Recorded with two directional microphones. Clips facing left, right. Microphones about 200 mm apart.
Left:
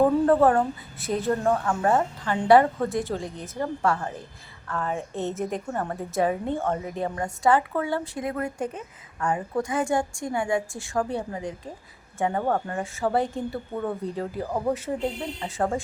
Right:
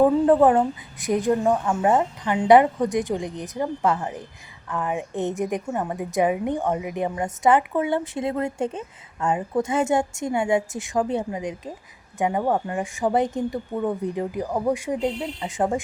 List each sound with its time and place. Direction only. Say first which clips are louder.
0.4 s a woman's voice: right 3 dB; 15° right (ahead or behind)